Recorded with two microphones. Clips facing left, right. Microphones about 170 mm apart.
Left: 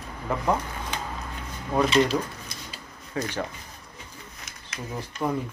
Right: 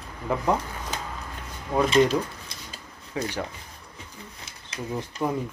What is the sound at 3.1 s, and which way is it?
Speech, 10° right (ahead or behind).